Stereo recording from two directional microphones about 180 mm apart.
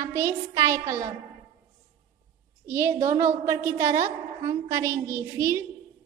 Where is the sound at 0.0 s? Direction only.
15° right (ahead or behind).